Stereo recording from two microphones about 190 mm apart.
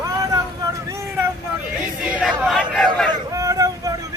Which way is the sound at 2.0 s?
5° right (ahead or behind).